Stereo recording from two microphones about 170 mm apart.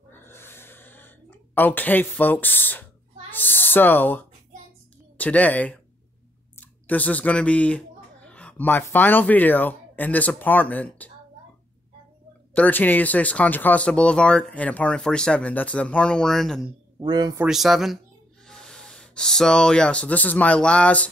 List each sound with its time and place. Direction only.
0.2 s a sound: 15° left (ahead or behind)
5.1 s speech: 10° left (ahead or behind)
12.5 s speech: 10° left (ahead or behind)
17.0 s a man's voice: 25° right (ahead or behind)
17.5 s speech: centre (ahead or behind)